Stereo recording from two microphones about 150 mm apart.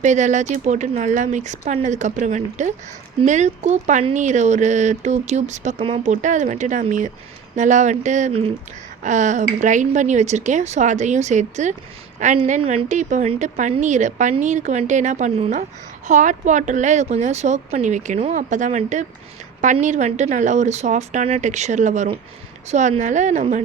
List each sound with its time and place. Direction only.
0.0 s speech: 55° right (ahead or behind)
9.0 s speech: 55° right (ahead or behind)
15.4 s speech: 45° right (ahead or behind)
16.0 s speech: 55° right (ahead or behind)